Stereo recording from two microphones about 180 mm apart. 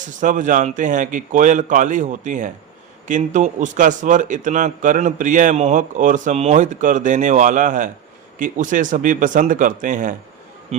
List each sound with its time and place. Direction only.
0.2 s a man's voice: 45° right (ahead or behind)
10.7 s speech: 35° right (ahead or behind)